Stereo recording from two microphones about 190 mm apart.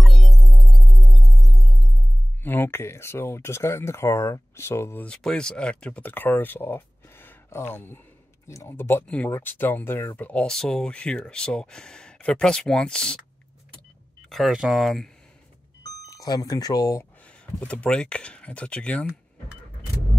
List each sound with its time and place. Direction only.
0.0 s music: centre (ahead or behind)
2.4 s speech: 10° left (ahead or behind)
14.3 s speech: centre (ahead or behind)
16.1 s speech: 20° left (ahead or behind)
17.6 s speech: 5° left (ahead or behind)